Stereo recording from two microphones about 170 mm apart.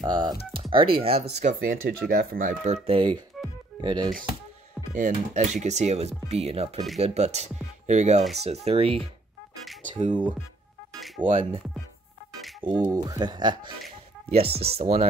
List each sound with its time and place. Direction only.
0.0 s speech: 25° right (ahead or behind)
4.9 s speech: 45° right (ahead or behind)
11.2 s speech: 35° right (ahead or behind)
12.6 s speech: 25° right (ahead or behind)
14.6 s speech: 35° right (ahead or behind)